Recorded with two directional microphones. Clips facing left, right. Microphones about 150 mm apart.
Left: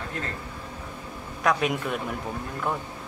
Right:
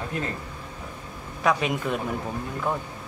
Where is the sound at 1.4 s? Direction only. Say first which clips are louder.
Right 1 dB; centre (ahead or behind).